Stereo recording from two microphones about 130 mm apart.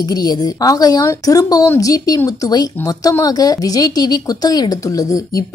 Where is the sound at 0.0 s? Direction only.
30° left (ahead or behind).